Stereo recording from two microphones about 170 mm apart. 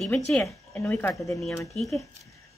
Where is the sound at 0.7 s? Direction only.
10° left (ahead or behind).